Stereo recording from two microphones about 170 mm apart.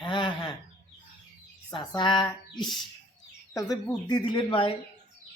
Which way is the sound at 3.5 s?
25° left (ahead or behind).